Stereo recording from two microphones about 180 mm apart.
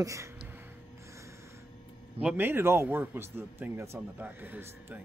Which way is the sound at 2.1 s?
10° right (ahead or behind).